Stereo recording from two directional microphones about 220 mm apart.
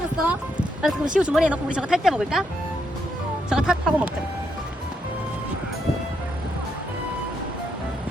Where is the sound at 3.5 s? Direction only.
5° right (ahead or behind).